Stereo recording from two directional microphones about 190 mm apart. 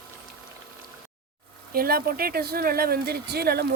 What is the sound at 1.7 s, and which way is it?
Speech, 50° right (ahead or behind).